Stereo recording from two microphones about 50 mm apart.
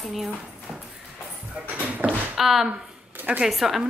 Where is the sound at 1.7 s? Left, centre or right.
Right.